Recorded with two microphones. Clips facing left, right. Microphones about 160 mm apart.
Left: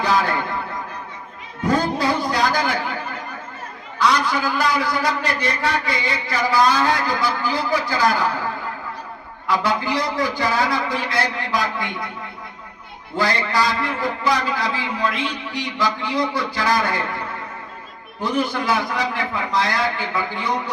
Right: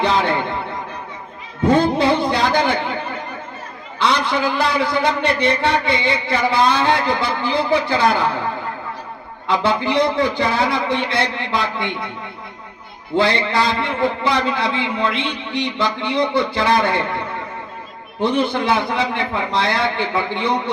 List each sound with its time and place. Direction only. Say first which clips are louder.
0.0 s speech: right 2 dB; 25° right (ahead or behind)
1.6 s music: right 5 dB; 25° right (ahead or behind)
3.9 s a man's voice: right 1 dB; 25° right (ahead or behind)
9.5 s a man's voice: right 3 dB; 25° right (ahead or behind)
13.1 s a man's voice: right 4 dB; 25° right (ahead or behind)
18.2 s a man's voice: right 4 dB; 25° right (ahead or behind)